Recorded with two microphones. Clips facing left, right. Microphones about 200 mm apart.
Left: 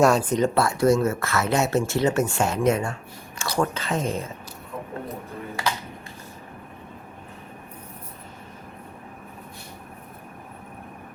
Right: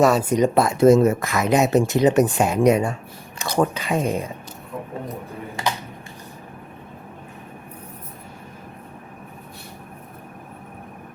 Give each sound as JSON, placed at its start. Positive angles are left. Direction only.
{"t": 0.0, "sound": "speech", "side_deg": -5}